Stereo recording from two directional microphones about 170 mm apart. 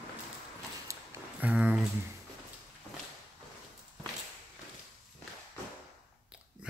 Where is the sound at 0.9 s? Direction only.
20° right (ahead or behind).